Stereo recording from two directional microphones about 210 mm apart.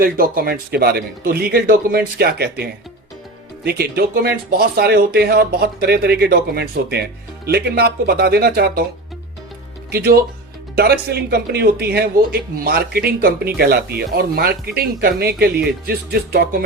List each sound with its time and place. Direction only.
0.0 s speech: 45° right (ahead or behind)
9.9 s speech: 45° right (ahead or behind)